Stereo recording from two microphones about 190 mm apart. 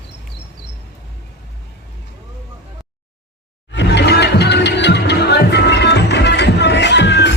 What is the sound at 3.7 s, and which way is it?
Music, 60° left (ahead or behind).